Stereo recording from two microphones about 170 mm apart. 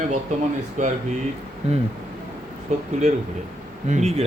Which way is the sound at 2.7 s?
40° right (ahead or behind).